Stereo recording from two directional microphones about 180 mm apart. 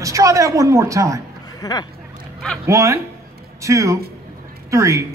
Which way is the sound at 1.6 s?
20° left (ahead or behind).